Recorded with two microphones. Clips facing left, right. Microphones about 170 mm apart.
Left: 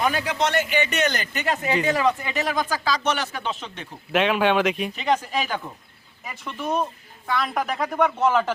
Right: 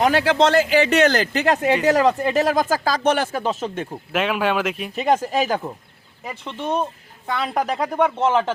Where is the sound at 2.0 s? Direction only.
40° right (ahead or behind).